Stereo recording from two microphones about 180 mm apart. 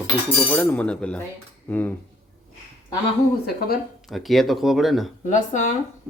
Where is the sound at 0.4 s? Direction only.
10° left (ahead or behind).